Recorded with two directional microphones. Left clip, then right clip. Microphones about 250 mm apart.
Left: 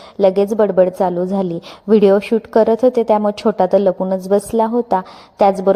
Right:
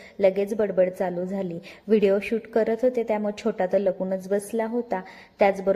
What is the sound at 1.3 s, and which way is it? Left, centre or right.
Speech, left.